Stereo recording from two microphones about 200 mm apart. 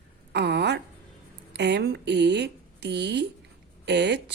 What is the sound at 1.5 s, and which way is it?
A woman's voice, 55° right (ahead or behind).